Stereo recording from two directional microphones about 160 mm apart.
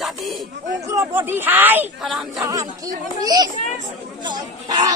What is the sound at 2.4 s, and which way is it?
Chatter, 20° right (ahead or behind).